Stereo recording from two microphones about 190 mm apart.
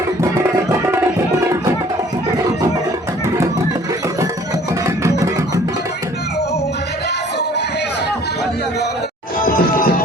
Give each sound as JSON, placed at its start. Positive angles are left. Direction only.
{"t": 0.7, "sound": "music", "side_deg": -15}
{"t": 4.9, "sound": "music", "side_deg": -15}
{"t": 9.4, "sound": "music", "side_deg": 50}